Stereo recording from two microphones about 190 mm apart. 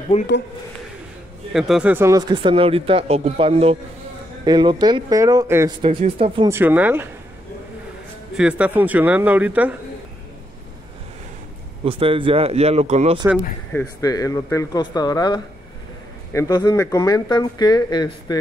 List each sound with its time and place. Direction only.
0.1 s speech: 30° left (ahead or behind)
1.5 s speech: centre (ahead or behind)
5.8 s speech: 30° right (ahead or behind)
6.5 s a man's voice: 10° right (ahead or behind)
8.4 s a man's voice: 5° right (ahead or behind)
11.8 s speech: 30° right (ahead or behind)
13.7 s speech: 15° left (ahead or behind)